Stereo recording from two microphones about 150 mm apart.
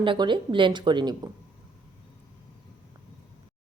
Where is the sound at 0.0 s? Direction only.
35° right (ahead or behind).